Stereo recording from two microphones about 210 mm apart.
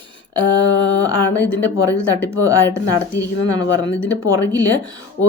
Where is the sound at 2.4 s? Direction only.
15° right (ahead or behind).